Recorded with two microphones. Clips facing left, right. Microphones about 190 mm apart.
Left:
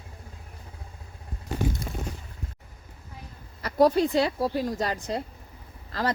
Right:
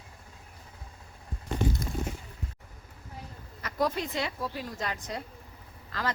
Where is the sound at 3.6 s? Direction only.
35° left (ahead or behind).